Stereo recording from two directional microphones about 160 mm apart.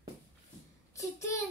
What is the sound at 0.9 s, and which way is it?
Speech, 20° left (ahead or behind).